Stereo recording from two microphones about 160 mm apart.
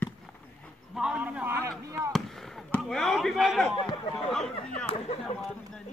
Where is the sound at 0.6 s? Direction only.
Centre (ahead or behind).